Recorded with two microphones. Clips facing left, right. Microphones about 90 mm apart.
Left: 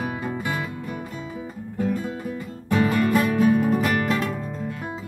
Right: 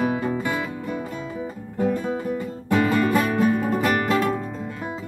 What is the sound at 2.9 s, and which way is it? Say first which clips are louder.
Music: even; centre (ahead or behind).